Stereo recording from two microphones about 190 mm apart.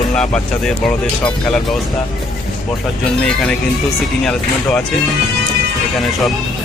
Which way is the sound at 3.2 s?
5° left (ahead or behind).